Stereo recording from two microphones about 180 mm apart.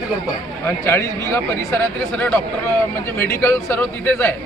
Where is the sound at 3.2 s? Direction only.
15° left (ahead or behind).